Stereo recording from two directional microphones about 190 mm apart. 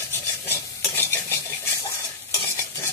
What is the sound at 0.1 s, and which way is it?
Stir, 10° left (ahead or behind).